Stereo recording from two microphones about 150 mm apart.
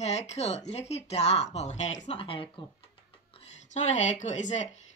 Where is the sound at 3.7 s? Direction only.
50° left (ahead or behind).